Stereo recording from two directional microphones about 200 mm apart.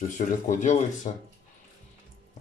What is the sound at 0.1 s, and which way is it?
Speech, 40° left (ahead or behind).